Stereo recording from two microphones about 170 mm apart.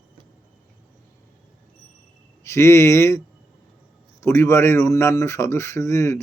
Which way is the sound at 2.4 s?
15° left (ahead or behind).